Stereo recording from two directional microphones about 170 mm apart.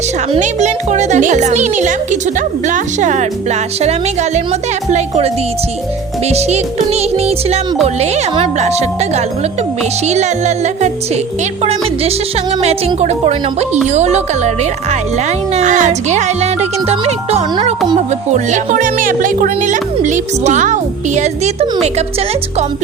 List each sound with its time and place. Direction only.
0.3 s speech: 45° right (ahead or behind)
3.8 s music: 40° right (ahead or behind)
13.8 s speech: 45° right (ahead or behind)
17.1 s music: 40° right (ahead or behind)
17.9 s speech: 45° right (ahead or behind)
21.2 s music: 40° right (ahead or behind)